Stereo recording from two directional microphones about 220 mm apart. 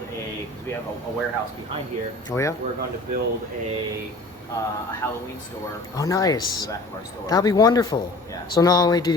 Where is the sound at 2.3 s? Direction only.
15° left (ahead or behind).